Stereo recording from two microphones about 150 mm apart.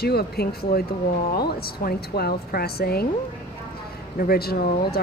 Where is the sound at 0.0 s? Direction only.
90° left.